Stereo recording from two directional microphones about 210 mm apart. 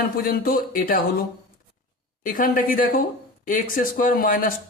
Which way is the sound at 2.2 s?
40° left (ahead or behind).